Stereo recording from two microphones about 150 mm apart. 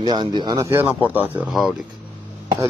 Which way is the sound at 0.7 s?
15° right (ahead or behind).